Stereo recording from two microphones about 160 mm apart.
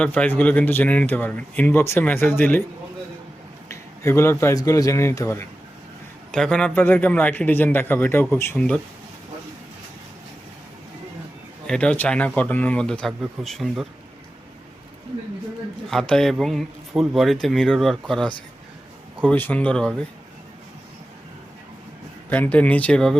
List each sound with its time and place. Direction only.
0.0 s speech: 10° left (ahead or behind)
3.7 s a man's voice: 15° left (ahead or behind)
6.3 s speech: 5° left (ahead or behind)
11.6 s speech: 5° left (ahead or behind)
15.9 s speech: 5° left (ahead or behind)
22.3 s speech: 10° left (ahead or behind)